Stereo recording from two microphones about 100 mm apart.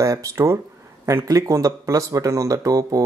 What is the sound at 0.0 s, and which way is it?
Speech, 30° right (ahead or behind).